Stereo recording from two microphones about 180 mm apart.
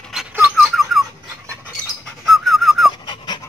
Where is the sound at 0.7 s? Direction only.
Centre (ahead or behind).